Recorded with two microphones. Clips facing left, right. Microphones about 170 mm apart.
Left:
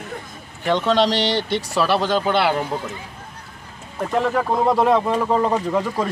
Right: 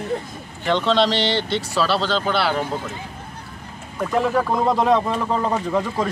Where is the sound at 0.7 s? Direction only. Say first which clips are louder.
Left 1 dB; 10° left (ahead or behind).